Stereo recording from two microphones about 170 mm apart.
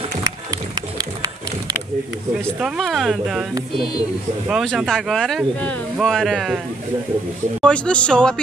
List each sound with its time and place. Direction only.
0.2 s music: 25° right (ahead or behind)
2.6 s speech: centre (ahead or behind)
4.5 s speech: 5° right (ahead or behind)
7.6 s speech: 5° left (ahead or behind)